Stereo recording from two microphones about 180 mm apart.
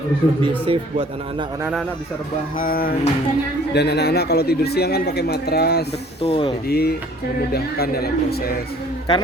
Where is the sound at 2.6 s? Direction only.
55° left (ahead or behind).